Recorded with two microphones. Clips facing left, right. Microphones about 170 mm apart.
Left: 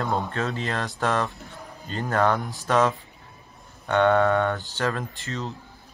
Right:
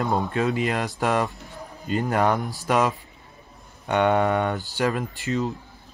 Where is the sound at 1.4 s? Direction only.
15° right (ahead or behind).